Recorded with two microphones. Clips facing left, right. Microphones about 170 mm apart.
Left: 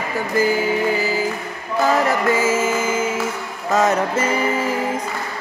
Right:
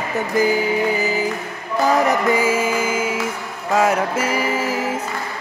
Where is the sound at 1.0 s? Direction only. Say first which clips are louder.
Even; 15° right (ahead or behind).